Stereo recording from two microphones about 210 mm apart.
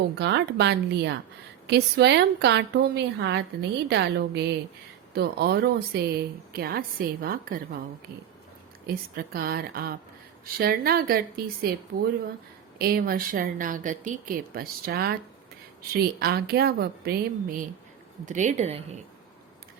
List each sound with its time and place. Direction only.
0.2 s a woman's voice: 55° right (ahead or behind)
9.1 s a woman's voice: 45° right (ahead or behind)
12.8 s a woman's voice: 45° right (ahead or behind)
18.3 s speech: 35° right (ahead or behind)